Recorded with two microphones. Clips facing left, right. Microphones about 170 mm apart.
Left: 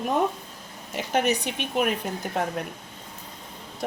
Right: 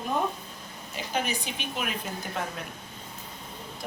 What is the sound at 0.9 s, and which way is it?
Speech, 70° left (ahead or behind).